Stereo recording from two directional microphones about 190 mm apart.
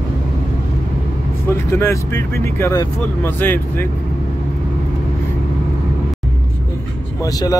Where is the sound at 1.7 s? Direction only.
15° left (ahead or behind).